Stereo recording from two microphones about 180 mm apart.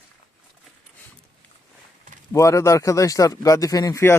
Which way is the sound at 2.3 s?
15° left (ahead or behind).